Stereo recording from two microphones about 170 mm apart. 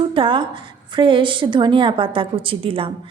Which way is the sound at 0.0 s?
30° right (ahead or behind).